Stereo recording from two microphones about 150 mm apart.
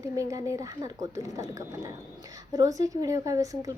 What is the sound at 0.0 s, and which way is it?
A woman's voice, 20° right (ahead or behind).